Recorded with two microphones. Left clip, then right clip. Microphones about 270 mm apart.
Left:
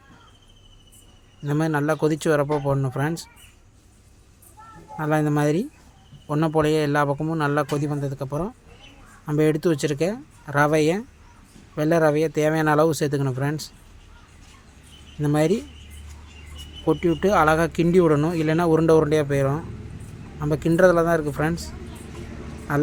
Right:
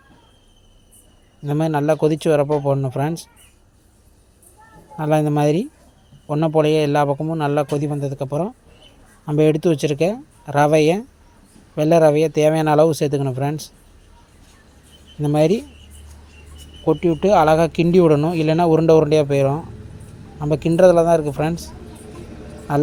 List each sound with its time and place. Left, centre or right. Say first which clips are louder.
1.5 s speech: right 4 dB; centre
4.9 s speech: right 4 dB; centre
15.2 s speech: right 4 dB; centre
16.8 s speech: right 4 dB; centre